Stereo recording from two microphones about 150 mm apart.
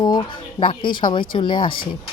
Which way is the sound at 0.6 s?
35° left (ahead or behind).